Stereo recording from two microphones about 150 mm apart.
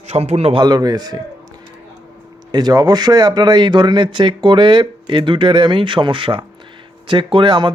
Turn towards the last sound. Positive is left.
turn(degrees=-35)  # may be behind; listen again after turning